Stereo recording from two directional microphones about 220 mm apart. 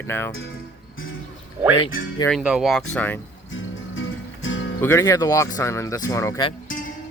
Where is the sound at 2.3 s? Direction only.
5° right (ahead or behind).